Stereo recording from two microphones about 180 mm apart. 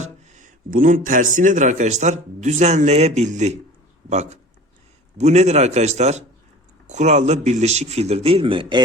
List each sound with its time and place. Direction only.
0.0 s speech: 45° right (ahead or behind)